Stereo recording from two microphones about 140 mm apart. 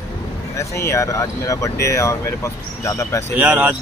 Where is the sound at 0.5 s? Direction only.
20° left (ahead or behind).